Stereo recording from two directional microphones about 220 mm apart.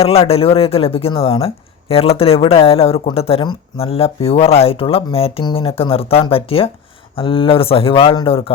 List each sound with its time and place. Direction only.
0.0 s speech: 25° left (ahead or behind)